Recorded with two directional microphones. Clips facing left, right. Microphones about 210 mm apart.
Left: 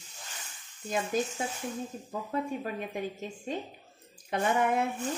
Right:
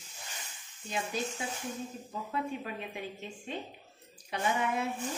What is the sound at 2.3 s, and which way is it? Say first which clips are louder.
A woman's voice: left 3 dB; 40° left (ahead or behind).